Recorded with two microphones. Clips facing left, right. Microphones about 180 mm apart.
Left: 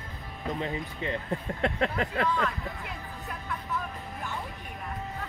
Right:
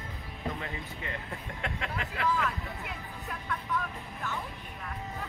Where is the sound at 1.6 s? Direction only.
35° left (ahead or behind).